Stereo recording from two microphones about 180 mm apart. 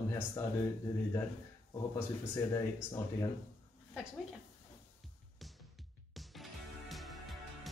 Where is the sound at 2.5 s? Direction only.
15° left (ahead or behind).